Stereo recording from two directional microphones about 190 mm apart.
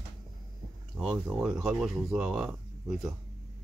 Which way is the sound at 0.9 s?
5° right (ahead or behind).